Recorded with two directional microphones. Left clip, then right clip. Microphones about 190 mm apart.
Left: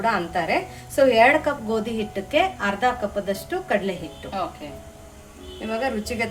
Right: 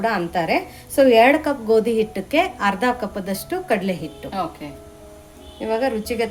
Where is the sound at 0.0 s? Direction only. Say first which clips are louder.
Right 2 dB; 40° right (ahead or behind).